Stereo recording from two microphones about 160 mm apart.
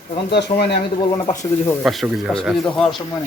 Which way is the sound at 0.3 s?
90° left.